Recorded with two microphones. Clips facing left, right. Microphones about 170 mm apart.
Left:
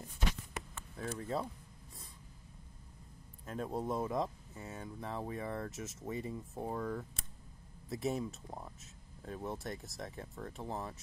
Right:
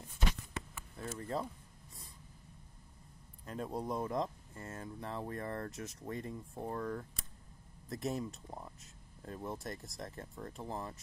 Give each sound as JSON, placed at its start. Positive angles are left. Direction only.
{"t": 0.9, "sound": "speech", "side_deg": 0}
{"t": 3.4, "sound": "speech", "side_deg": 0}